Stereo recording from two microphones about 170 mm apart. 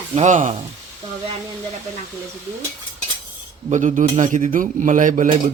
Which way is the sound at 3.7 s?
45° right (ahead or behind).